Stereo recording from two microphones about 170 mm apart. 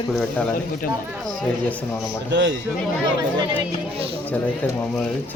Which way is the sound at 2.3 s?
90° right.